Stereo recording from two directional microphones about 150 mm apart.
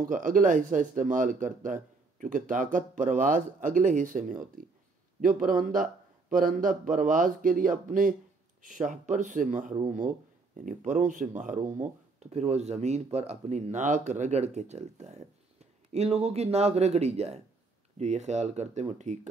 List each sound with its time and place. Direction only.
0.0 s speech: 60° right (ahead or behind)